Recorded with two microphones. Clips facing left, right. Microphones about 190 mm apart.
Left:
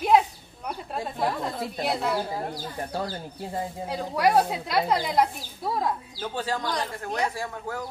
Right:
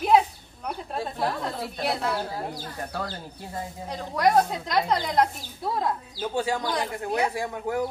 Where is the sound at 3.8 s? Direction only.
5° left (ahead or behind).